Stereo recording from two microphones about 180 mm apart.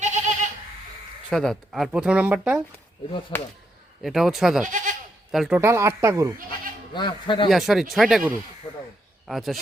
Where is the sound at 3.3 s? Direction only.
10° left (ahead or behind).